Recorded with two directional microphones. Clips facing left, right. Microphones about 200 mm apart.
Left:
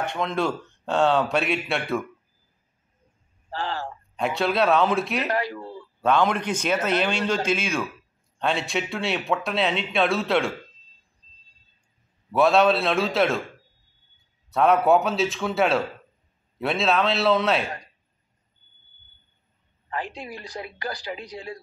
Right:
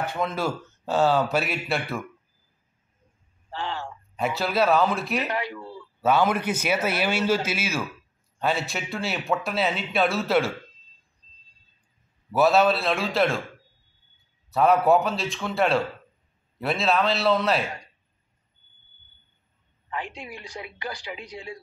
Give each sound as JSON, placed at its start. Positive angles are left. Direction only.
{"t": 0.0, "sound": "speech", "side_deg": -5}
{"t": 3.5, "sound": "speech", "side_deg": 35}
{"t": 4.2, "sound": "speech", "side_deg": 0}
{"t": 5.3, "sound": "speech", "side_deg": 35}
{"t": 5.9, "sound": "a man's voice", "side_deg": -5}
{"t": 12.3, "sound": "speech", "side_deg": 0}
{"t": 14.5, "sound": "speech", "side_deg": 0}
{"t": 19.9, "sound": "speech", "side_deg": 35}